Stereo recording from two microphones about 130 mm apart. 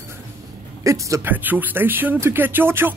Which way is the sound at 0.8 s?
25° right (ahead or behind).